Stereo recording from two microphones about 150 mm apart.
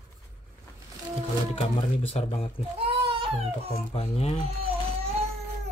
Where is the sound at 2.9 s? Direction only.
35° right (ahead or behind).